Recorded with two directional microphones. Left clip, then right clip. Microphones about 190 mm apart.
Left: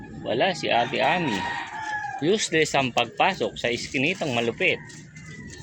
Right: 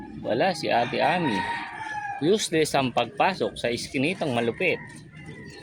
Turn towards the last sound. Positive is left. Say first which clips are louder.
# left 1 dB
turn(degrees=-15)  # may be behind; listen again after turning